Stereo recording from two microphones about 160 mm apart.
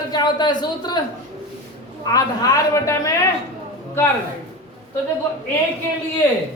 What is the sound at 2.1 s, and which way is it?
A man's voice, 20° left (ahead or behind).